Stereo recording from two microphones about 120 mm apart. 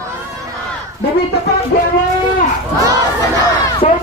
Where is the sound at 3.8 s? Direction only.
70° left (ahead or behind).